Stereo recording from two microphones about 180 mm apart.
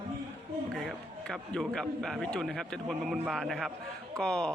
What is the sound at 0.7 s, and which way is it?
Speech, centre (ahead or behind).